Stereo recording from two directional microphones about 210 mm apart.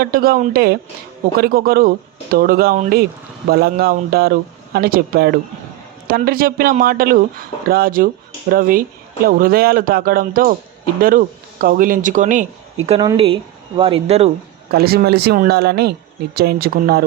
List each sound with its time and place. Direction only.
0.0 s speech: 45° right (ahead or behind)
13.0 s speech: 20° right (ahead or behind)
14.7 s speech: 45° right (ahead or behind)